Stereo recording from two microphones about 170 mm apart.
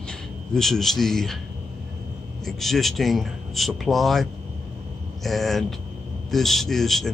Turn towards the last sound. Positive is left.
turn(degrees=0)  # may be behind; listen again after turning